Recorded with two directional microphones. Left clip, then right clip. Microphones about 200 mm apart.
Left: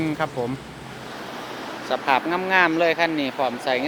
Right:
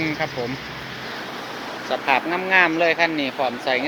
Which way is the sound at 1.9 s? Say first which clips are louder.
Even; 15° left (ahead or behind).